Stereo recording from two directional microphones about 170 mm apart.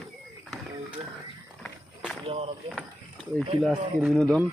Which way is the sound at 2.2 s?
35° right (ahead or behind).